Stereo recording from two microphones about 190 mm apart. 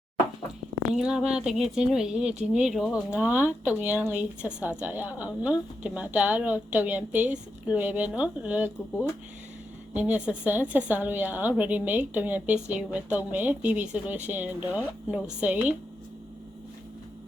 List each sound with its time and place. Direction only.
0.9 s a woman's voice: 5° right (ahead or behind)